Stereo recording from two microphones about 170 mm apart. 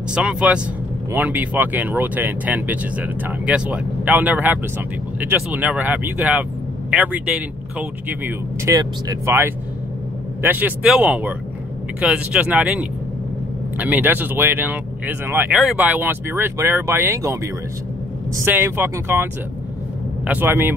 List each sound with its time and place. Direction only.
0.1 s speech: 5° right (ahead or behind)
15.5 s speech: centre (ahead or behind)
20.2 s speech: 10° right (ahead or behind)